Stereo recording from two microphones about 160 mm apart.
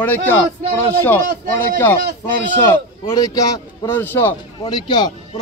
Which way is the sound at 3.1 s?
25° left (ahead or behind).